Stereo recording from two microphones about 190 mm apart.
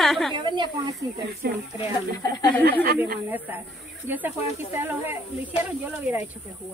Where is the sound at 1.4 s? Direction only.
60° right (ahead or behind).